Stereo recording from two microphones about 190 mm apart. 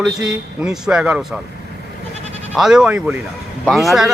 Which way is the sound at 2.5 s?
5° right (ahead or behind).